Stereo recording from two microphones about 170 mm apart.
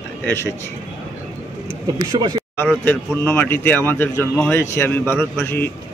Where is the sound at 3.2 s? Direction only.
15° left (ahead or behind).